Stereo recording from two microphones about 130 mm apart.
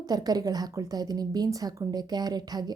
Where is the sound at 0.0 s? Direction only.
30° right (ahead or behind).